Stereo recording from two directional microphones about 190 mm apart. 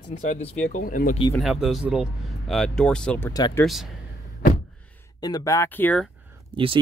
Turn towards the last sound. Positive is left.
turn(degrees=-25)  # may be behind; listen again after turning